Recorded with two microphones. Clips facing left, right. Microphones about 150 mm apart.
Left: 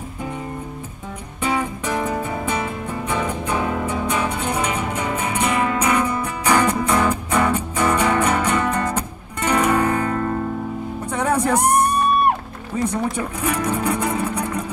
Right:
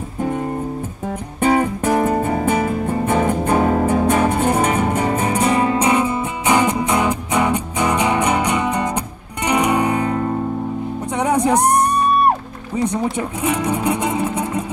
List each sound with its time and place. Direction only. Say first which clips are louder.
0.2 s music: right 8 dB; 50° right (ahead or behind); by 14.6 s 20° right (ahead or behind)